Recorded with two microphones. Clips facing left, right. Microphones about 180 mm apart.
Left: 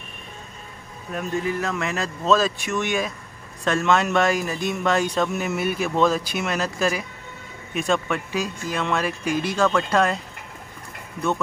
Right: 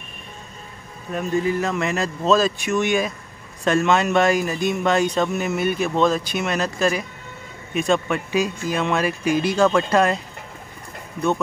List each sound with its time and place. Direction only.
1.1 s speech: centre (ahead or behind)